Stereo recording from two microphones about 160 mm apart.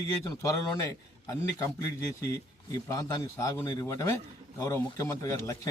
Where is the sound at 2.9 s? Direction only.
20° left (ahead or behind).